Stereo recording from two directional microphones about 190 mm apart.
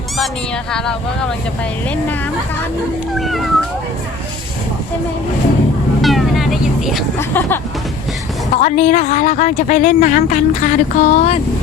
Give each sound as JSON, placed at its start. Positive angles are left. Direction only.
{"t": 3.2, "sound": "speech", "side_deg": 0}
{"t": 6.0, "sound": "vehicle", "side_deg": 0}
{"t": 7.2, "sound": "speech", "side_deg": 10}
{"t": 8.6, "sound": "a woman's voice", "side_deg": 40}